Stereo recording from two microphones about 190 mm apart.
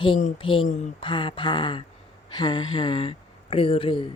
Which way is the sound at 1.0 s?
25° left (ahead or behind).